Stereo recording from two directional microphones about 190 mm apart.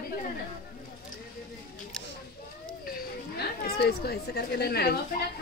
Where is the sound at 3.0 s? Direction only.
55° left (ahead or behind).